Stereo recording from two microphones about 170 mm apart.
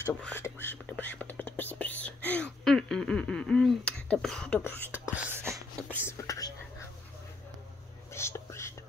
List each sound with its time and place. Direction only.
0.2 s whispering: 10° left (ahead or behind)
5.1 s a sound: 15° right (ahead or behind)
6.0 s whispering: 15° left (ahead or behind)
8.1 s whispering: 15° left (ahead or behind)